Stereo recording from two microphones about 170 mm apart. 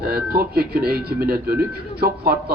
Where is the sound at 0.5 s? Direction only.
70° right (ahead or behind).